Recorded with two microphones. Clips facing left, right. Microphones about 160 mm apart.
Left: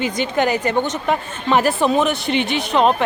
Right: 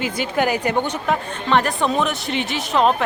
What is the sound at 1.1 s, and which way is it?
A woman's voice, 5° left (ahead or behind).